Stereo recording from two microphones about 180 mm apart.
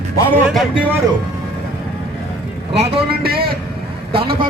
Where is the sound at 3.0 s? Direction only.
60° right (ahead or behind).